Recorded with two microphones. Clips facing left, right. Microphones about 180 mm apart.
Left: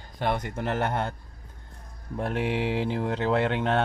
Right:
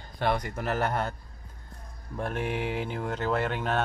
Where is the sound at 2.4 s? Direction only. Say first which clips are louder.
Left 4 dB; 90° left.